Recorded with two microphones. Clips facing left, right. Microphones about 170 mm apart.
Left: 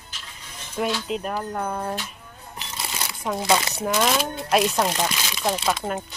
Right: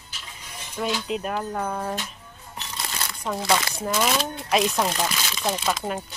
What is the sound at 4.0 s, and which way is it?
Speech, centre (ahead or behind).